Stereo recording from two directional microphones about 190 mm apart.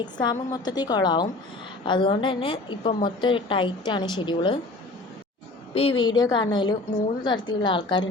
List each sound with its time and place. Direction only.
0.0 s a woman's voice: 25° left (ahead or behind)
5.7 s a woman's voice: 30° left (ahead or behind)